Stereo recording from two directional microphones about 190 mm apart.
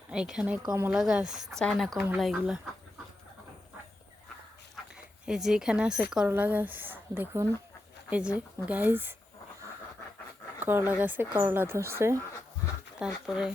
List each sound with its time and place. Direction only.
0.1 s speech: 5° right (ahead or behind)
0.6 s a woman's voice: 15° right (ahead or behind)
0.9 s speech: 5° right (ahead or behind)
5.2 s a woman's voice: 5° right (ahead or behind)
10.6 s a woman's voice: 10° right (ahead or behind)
13.0 s speech: centre (ahead or behind)